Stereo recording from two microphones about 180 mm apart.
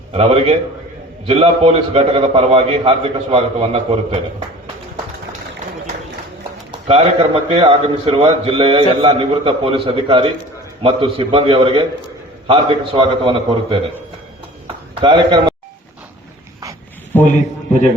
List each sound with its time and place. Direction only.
0.1 s a man's voice: 30° right (ahead or behind)
6.7 s a man's voice: 30° right (ahead or behind)
15.0 s a man's voice: 25° right (ahead or behind)
17.1 s a man's voice: 10° left (ahead or behind)